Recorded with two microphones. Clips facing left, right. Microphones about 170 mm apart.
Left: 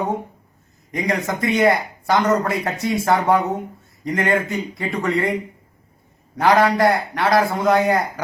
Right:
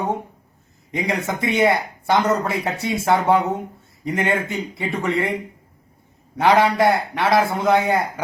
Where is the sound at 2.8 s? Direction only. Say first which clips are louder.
Left 1 dB; 25° right (ahead or behind).